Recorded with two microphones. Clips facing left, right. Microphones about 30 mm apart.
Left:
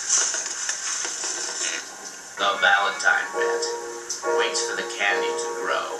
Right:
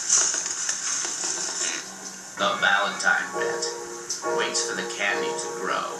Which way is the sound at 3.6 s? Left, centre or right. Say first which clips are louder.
Left 3 dB; left.